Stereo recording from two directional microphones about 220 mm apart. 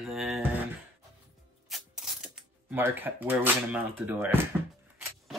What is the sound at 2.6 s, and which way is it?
Speech, 10° right (ahead or behind).